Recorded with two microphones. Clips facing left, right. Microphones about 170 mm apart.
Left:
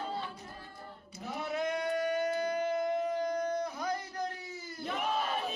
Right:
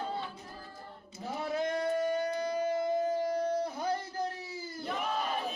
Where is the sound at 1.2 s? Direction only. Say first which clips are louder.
Right 1 dB; 30° right (ahead or behind).